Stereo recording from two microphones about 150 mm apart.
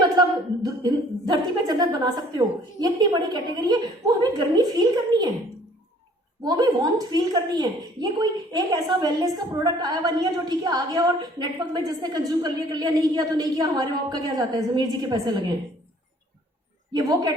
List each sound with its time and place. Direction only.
0.2 s a woman's voice: 25° right (ahead or behind)
6.4 s a woman's voice: 25° right (ahead or behind)
16.9 s a woman's voice: 25° right (ahead or behind)